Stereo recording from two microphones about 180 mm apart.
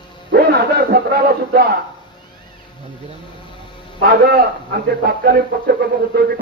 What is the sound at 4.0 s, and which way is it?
A man's voice, 60° right (ahead or behind).